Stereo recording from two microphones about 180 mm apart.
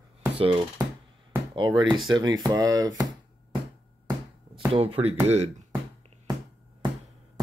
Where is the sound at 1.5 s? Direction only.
25° right (ahead or behind).